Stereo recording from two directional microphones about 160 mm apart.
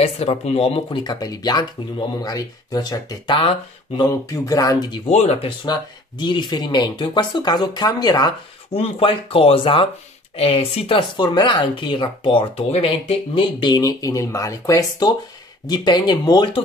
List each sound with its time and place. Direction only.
0.0 s speech: 40° left (ahead or behind)
5.0 s speech: 40° left (ahead or behind)
5.7 s speech: 30° left (ahead or behind)
8.7 s speech: 35° left (ahead or behind)